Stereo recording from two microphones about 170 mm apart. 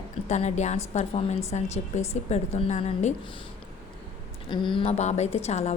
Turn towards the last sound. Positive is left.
turn(degrees=40)  # may be behind; listen again after turning